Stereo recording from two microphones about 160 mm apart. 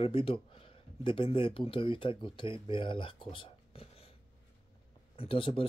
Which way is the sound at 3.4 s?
35° left (ahead or behind).